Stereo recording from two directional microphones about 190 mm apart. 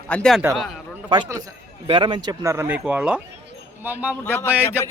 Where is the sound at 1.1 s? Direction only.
20° right (ahead or behind).